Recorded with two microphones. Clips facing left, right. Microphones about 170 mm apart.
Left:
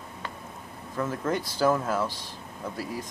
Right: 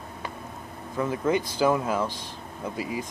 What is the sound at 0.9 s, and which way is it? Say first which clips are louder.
Speech: right 4 dB; 5° right (ahead or behind).